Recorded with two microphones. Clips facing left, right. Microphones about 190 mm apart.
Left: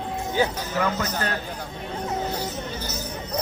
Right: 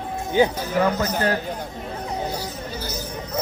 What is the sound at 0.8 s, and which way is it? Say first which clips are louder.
Speech: right 5 dB; 35° right (ahead or behind).